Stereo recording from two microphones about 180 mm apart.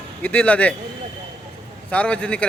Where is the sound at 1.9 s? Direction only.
5° left (ahead or behind).